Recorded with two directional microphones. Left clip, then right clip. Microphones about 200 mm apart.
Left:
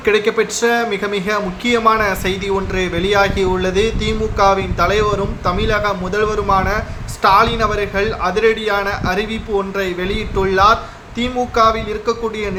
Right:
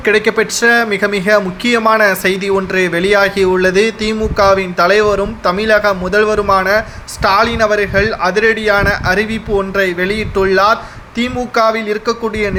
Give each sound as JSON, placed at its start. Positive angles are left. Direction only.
{"t": 0.0, "sound": "speech", "side_deg": -25}